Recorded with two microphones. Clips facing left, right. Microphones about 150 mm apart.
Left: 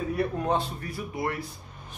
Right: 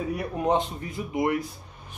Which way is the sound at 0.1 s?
15° right (ahead or behind).